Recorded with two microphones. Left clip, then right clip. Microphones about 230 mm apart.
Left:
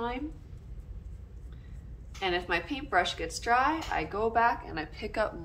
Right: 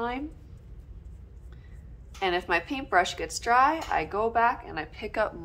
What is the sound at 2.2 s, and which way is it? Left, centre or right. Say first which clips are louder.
A woman's voice: right 4 dB; centre.